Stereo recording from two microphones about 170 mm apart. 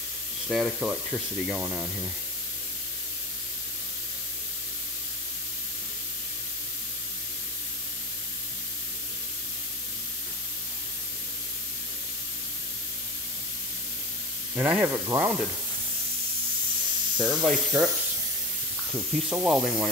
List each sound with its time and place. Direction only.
0.5 s speech: 5° right (ahead or behind)
14.5 s speech: 10° right (ahead or behind)
17.2 s speech: 5° right (ahead or behind)
19.3 s speech: 10° right (ahead or behind)